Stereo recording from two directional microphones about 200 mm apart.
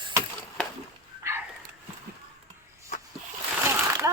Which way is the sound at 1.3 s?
15° right (ahead or behind).